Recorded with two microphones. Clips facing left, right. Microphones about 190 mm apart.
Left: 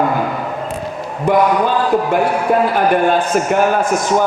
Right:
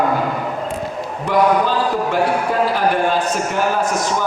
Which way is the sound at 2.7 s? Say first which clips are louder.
Left 4 dB; 55° left (ahead or behind).